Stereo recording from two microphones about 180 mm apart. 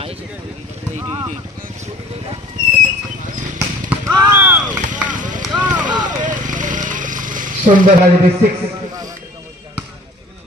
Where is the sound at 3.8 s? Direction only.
20° right (ahead or behind).